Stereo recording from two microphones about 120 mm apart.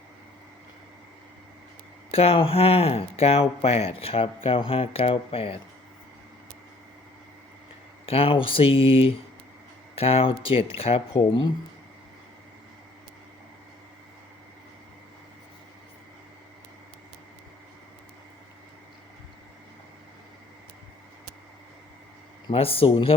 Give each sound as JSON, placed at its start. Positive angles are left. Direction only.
{"t": 2.0, "sound": "speech", "side_deg": 50}
{"t": 8.0, "sound": "speech", "side_deg": 55}
{"t": 22.5, "sound": "speech", "side_deg": 50}